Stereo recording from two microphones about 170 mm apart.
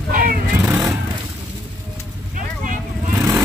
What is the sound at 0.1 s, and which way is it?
Vehicle, 55° right (ahead or behind).